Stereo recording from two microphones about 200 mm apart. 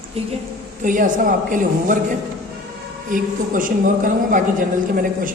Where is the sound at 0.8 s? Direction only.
40° right (ahead or behind).